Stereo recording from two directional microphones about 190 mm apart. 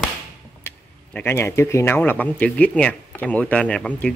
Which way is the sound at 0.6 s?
10° left (ahead or behind).